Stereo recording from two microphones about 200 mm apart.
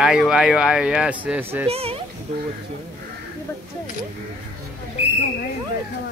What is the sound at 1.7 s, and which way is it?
Speech, 30° right (ahead or behind).